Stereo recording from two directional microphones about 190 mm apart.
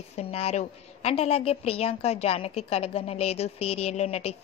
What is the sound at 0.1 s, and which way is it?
A woman's voice, 30° left (ahead or behind).